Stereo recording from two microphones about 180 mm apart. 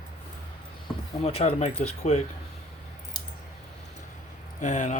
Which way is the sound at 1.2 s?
35° left (ahead or behind).